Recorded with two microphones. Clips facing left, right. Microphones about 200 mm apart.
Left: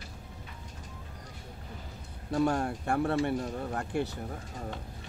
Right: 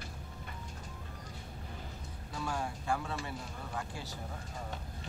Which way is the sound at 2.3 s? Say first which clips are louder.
Left 10 dB; 60° left (ahead or behind).